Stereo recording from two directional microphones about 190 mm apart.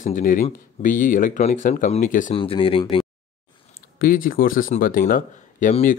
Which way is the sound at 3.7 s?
50° left (ahead or behind).